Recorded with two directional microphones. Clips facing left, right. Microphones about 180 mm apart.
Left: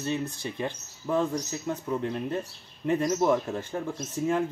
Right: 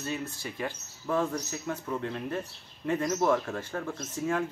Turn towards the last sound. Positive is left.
turn(degrees=15)  # may be behind; listen again after turning